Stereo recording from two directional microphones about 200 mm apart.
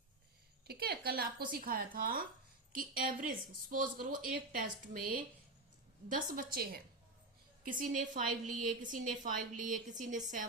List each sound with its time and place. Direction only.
0.7 s a woman's voice: 50° right (ahead or behind)